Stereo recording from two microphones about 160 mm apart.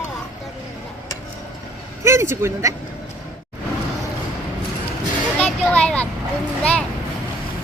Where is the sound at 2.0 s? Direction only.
15° right (ahead or behind).